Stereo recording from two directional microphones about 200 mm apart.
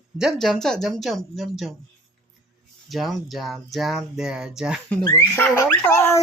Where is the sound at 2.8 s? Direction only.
Centre (ahead or behind).